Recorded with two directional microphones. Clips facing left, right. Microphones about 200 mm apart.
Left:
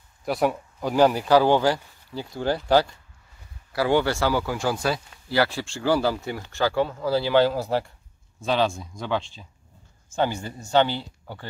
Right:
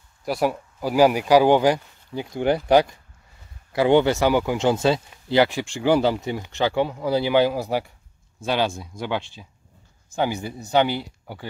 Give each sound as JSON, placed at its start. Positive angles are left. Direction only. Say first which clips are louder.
{"t": 0.2, "sound": "speech", "louder": "even", "side_deg": 0}